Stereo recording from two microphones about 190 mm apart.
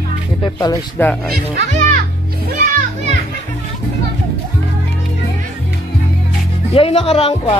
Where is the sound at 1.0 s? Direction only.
10° left (ahead or behind).